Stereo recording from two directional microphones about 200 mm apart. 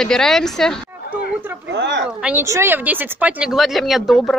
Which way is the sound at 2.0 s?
5° right (ahead or behind).